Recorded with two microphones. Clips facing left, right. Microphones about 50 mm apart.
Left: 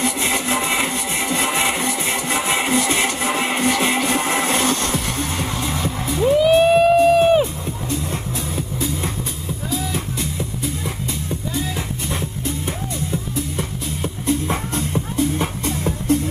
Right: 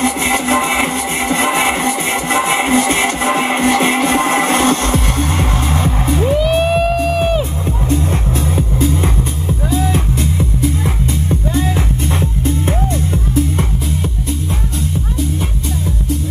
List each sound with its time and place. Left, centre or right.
0.0 s music: right
6.3 s music: centre
12.1 s music: right